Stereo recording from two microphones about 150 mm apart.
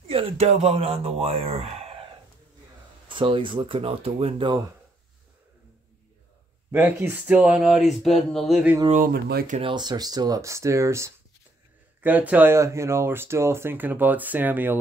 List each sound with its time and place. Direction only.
0.1 s speech: 40° right (ahead or behind)
3.1 s speech: 35° right (ahead or behind)
6.7 s speech: 15° right (ahead or behind)
8.9 s speech: 80° right
9.6 s speech: 30° right (ahead or behind); by 14.8 s 15° right (ahead or behind)